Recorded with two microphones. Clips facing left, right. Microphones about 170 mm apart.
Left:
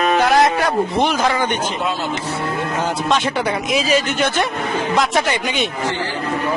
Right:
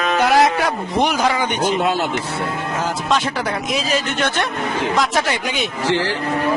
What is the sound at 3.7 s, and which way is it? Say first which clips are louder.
Speech: left 5 dB; centre (ahead or behind).